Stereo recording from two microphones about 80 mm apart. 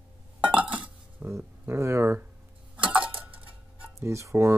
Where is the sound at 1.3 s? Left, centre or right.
Right.